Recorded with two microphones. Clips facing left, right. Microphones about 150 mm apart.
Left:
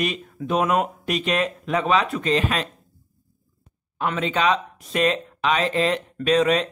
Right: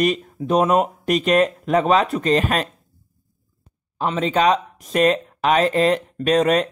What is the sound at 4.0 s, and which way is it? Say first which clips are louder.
Speech: right 4 dB; 35° right (ahead or behind).